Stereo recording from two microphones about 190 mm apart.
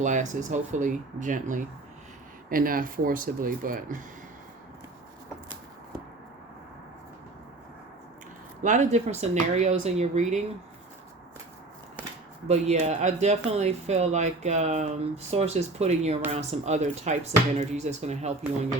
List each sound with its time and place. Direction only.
0.0 s speech: 40° right (ahead or behind)
8.6 s speech: 40° right (ahead or behind)
12.5 s speech: 35° right (ahead or behind)